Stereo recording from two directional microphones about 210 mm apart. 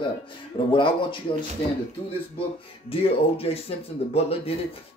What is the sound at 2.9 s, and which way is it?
Speech, 25° left (ahead or behind).